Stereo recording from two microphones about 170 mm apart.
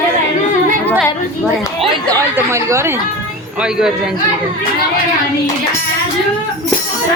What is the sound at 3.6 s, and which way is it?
Speech, 5° right (ahead or behind).